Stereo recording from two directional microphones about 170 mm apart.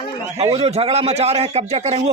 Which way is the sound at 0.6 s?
35° right (ahead or behind).